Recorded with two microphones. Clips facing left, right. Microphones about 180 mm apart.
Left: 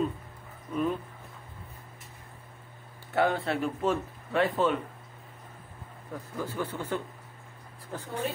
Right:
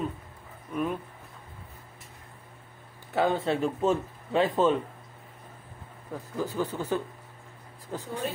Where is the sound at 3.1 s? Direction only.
20° right (ahead or behind).